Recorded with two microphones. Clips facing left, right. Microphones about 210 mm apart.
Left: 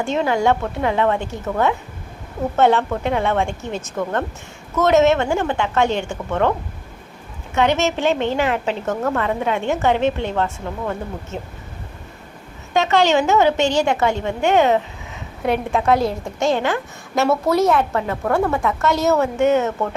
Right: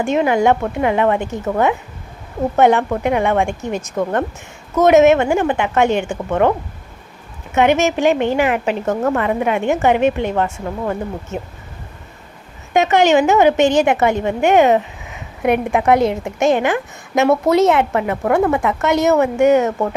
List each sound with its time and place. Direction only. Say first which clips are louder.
0.0 s a woman's voice: right 4 dB; 15° right (ahead or behind)
7.5 s a woman's voice: right 4 dB; 15° right (ahead or behind)
12.7 s a woman's voice: right 3 dB; 15° right (ahead or behind)